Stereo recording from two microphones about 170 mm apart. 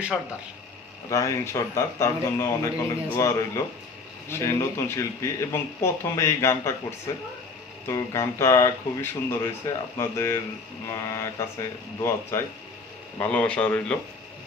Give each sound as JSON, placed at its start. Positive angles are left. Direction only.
{"t": 1.1, "sound": "speech", "side_deg": 15}